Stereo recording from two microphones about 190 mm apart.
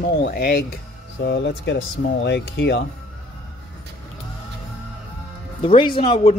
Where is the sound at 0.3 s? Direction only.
50° left (ahead or behind).